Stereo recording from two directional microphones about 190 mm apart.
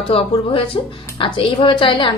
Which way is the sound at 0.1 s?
30° left (ahead or behind).